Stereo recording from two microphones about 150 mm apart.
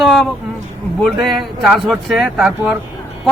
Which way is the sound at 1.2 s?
Centre (ahead or behind).